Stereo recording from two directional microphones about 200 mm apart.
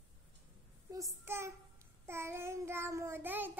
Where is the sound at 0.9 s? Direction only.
15° right (ahead or behind).